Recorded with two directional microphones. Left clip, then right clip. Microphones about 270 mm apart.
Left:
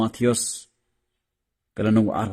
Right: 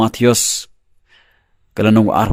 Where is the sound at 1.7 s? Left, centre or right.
Right.